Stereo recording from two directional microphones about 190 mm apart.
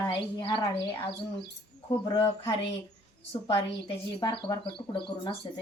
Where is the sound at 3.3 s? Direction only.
30° left (ahead or behind).